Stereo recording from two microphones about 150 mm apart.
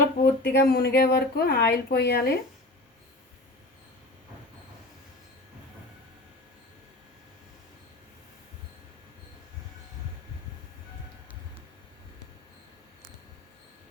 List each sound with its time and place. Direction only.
0.2 s speech: 85° left